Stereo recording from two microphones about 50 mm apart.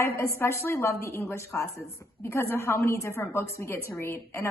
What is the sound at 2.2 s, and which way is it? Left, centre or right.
A woman's voice, left.